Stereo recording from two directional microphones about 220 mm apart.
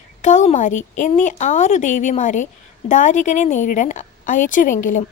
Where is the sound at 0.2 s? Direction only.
35° left (ahead or behind).